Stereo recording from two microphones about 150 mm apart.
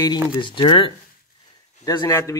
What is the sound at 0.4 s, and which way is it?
Speech, 30° left (ahead or behind).